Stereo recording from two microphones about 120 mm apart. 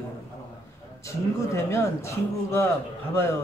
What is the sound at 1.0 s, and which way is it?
Speech, 25° left (ahead or behind).